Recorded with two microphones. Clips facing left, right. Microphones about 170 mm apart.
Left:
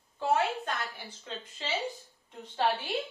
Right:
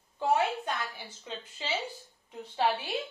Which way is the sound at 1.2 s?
10° right (ahead or behind).